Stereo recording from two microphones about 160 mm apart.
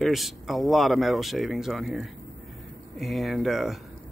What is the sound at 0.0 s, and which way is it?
Speech, centre (ahead or behind).